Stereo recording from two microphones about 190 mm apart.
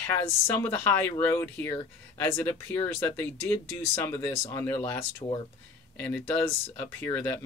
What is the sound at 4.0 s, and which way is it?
Speech, 15° left (ahead or behind).